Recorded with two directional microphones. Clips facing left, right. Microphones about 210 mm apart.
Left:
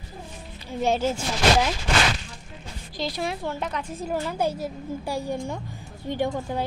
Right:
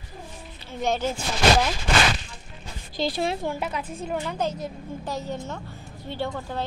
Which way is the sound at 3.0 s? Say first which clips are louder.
Right 3 dB; 25° right (ahead or behind).